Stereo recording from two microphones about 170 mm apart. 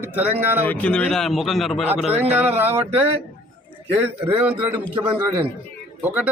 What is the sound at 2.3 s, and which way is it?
Speech, 10° right (ahead or behind).